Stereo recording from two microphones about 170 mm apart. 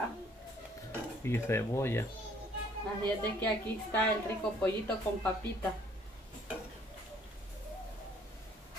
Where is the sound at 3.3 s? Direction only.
10° left (ahead or behind).